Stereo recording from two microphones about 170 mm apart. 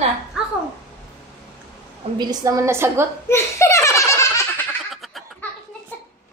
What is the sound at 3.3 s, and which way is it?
Laughter, 15° left (ahead or behind).